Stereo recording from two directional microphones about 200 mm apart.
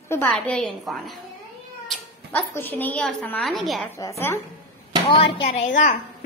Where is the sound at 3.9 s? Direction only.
15° left (ahead or behind).